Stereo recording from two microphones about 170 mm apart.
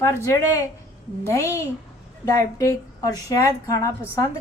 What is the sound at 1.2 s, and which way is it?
A woman's voice, 15° left (ahead or behind).